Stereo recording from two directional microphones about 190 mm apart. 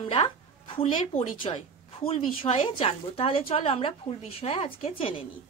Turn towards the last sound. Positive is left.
turn(degrees=30)  # may be behind; listen again after turning